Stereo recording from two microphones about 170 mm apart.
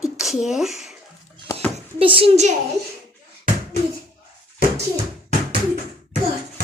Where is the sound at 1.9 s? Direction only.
30° right (ahead or behind).